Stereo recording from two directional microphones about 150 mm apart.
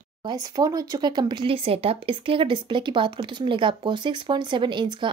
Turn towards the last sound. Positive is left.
turn(degrees=-30)  # may be behind; listen again after turning